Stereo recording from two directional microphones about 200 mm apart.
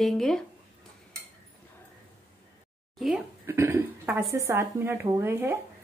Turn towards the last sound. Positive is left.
turn(degrees=-10)  # may be behind; listen again after turning